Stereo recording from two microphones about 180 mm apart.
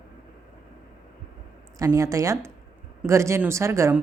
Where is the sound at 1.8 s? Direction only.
20° right (ahead or behind).